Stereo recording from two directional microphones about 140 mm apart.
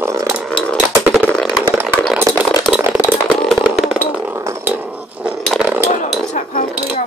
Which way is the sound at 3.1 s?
5° left (ahead or behind).